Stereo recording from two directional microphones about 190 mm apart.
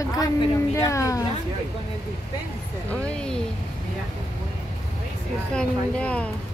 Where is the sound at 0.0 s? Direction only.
20° left (ahead or behind).